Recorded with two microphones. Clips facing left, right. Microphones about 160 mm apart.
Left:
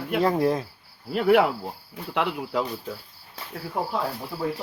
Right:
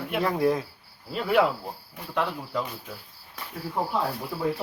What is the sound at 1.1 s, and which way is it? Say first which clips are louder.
Cricket: left 4 dB; 60° left (ahead or behind).